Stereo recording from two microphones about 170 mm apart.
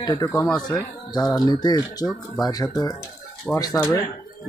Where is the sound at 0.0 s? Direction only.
25° left (ahead or behind).